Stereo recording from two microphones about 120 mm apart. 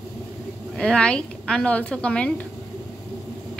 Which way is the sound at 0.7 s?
5° left (ahead or behind).